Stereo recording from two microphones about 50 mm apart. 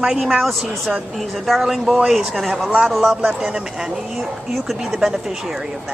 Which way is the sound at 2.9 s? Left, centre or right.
Centre.